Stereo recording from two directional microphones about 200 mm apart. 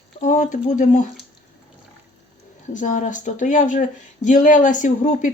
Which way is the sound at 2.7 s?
40° left (ahead or behind).